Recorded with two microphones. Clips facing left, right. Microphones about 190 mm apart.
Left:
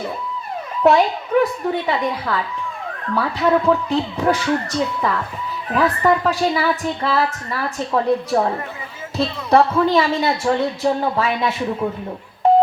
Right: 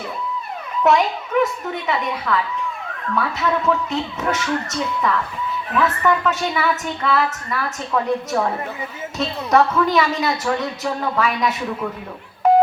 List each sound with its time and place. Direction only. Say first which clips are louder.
0.8 s a woman's voice: left 2 dB; 35° left (ahead or behind)